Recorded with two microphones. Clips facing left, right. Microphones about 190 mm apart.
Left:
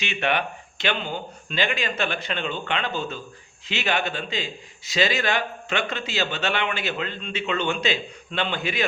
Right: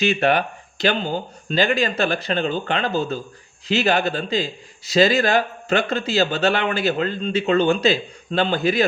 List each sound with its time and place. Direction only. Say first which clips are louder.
0.0 s speech: right 7 dB; 40° right (ahead or behind)